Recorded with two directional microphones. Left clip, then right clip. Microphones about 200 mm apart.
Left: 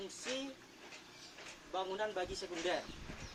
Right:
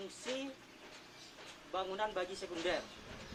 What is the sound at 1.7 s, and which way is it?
Speech, centre (ahead or behind).